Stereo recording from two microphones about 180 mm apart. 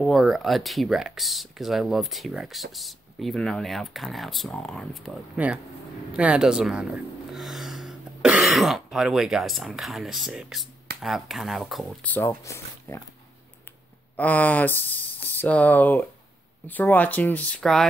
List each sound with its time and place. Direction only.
0.0 s speech: centre (ahead or behind)
14.1 s speech: 10° left (ahead or behind)